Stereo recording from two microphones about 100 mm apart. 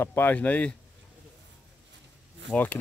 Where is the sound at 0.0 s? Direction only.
20° left (ahead or behind).